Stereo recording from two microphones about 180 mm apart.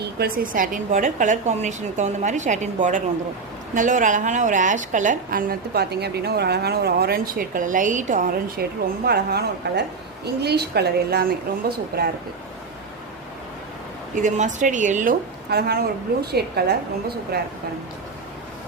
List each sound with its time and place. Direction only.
0.0 s a woman's voice: 60° right (ahead or behind)
9.0 s a woman's voice: 65° right (ahead or behind)
14.2 s a woman's voice: 45° right (ahead or behind)
15.4 s a woman's voice: 60° right (ahead or behind)